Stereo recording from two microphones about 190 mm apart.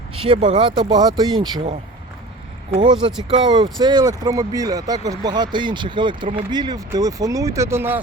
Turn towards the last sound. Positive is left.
turn(degrees=-10)  # may be behind; listen again after turning